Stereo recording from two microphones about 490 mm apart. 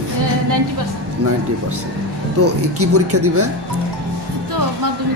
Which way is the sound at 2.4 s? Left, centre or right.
Right.